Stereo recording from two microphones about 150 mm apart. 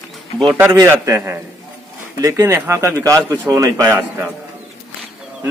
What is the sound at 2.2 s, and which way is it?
A man's voice, 20° right (ahead or behind).